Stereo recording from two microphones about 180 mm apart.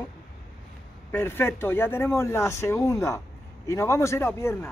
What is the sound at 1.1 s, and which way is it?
Speech, 10° left (ahead or behind).